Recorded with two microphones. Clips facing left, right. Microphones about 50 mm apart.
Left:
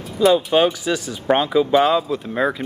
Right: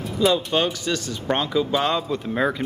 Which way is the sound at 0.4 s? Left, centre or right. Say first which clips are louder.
Left 6 dB; centre.